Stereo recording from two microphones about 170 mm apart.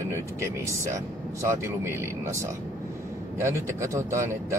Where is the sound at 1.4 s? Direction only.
15° right (ahead or behind).